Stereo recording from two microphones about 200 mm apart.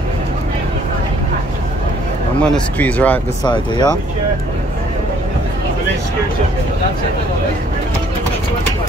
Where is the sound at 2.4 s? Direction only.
5° left (ahead or behind).